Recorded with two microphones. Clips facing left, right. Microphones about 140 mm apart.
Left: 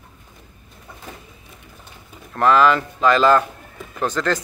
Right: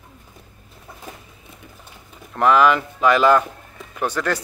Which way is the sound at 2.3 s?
15° right (ahead or behind).